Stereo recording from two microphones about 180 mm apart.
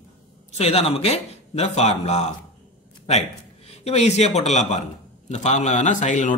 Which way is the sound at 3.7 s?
35° left (ahead or behind).